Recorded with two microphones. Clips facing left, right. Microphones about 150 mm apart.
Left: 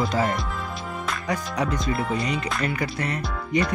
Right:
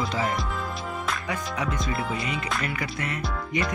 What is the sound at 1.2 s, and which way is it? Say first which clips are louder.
Speech: left 3 dB; 40° left (ahead or behind).